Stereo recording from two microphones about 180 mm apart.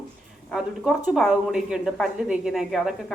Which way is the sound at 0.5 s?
Centre (ahead or behind).